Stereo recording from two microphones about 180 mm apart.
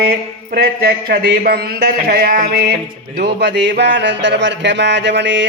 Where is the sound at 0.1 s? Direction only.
55° right (ahead or behind).